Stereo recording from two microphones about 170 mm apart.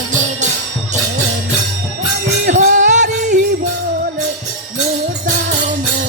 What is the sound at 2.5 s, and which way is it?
Music, 45° right (ahead or behind).